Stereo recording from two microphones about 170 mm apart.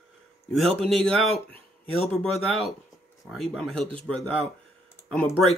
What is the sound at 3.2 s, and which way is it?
Speech, centre (ahead or behind).